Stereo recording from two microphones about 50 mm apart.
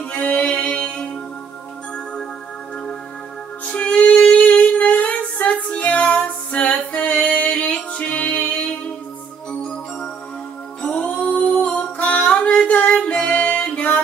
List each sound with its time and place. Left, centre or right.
0.0 s music: left
3.6 s female singing: left
10.8 s music: left